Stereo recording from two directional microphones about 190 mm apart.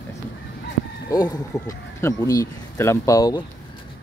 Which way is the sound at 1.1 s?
20° left (ahead or behind).